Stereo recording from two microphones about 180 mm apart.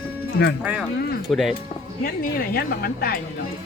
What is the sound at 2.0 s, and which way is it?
Speech, 55° left (ahead or behind).